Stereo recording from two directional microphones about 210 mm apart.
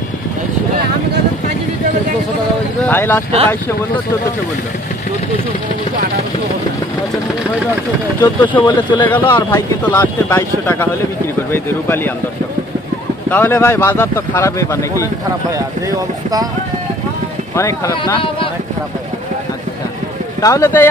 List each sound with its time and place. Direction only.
2.8 s speech: 10° left (ahead or behind)
8.2 s speech: 10° left (ahead or behind)
11.5 s speech: 10° left (ahead or behind)
13.3 s speech: 10° left (ahead or behind)
17.6 s speech: 10° left (ahead or behind)
20.4 s speech: 15° left (ahead or behind)